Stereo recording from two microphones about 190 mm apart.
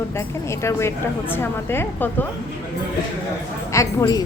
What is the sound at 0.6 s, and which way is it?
A woman's voice, 15° left (ahead or behind).